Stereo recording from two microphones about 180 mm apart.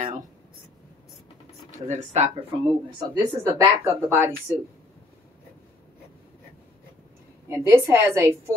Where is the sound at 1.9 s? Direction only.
40° right (ahead or behind).